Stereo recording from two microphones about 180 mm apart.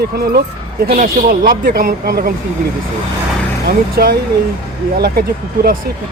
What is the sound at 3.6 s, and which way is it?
Speech, 60° right (ahead or behind).